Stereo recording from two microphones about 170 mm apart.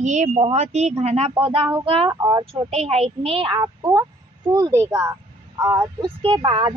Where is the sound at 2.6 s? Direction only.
40° right (ahead or behind); by 5.1 s 15° right (ahead or behind).